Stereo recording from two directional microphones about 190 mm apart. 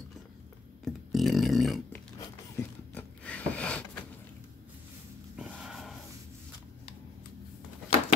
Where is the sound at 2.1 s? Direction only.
10° left (ahead or behind).